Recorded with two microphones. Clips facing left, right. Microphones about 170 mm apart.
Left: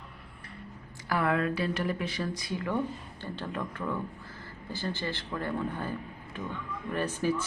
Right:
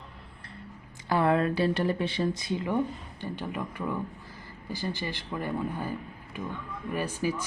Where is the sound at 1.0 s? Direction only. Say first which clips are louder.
Right 4 dB; 25° right (ahead or behind).